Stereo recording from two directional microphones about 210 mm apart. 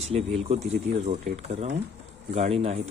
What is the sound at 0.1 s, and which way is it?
Speech, 30° right (ahead or behind).